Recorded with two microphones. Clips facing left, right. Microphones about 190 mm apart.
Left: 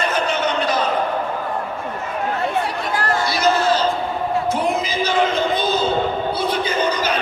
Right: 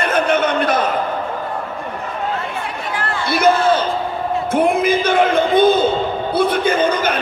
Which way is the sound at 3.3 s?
55° right (ahead or behind).